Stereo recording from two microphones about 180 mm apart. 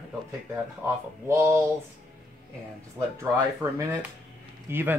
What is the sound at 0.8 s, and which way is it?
Speech, 15° right (ahead or behind).